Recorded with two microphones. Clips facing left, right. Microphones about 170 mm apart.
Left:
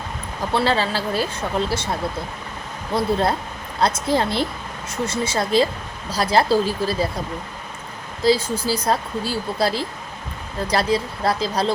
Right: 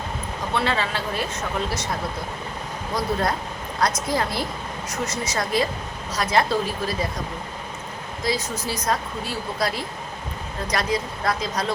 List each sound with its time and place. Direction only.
0.5 s speech: 30° left (ahead or behind)
8.2 s speech: 30° left (ahead or behind)